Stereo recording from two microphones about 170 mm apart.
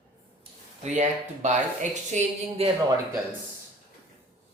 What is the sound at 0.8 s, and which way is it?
Speech, 45° right (ahead or behind).